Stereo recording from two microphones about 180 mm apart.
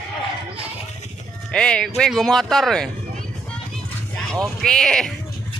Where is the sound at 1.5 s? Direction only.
5° left (ahead or behind).